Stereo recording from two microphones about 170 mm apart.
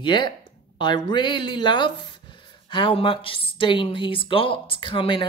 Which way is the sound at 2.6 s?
30° left (ahead or behind).